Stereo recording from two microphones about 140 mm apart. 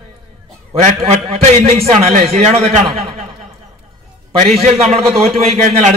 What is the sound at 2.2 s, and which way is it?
Speech, 45° right (ahead or behind).